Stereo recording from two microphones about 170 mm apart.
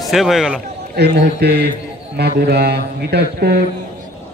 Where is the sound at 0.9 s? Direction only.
75° right (ahead or behind).